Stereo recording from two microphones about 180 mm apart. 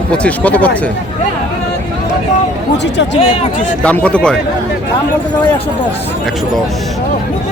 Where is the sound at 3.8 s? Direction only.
5° left (ahead or behind).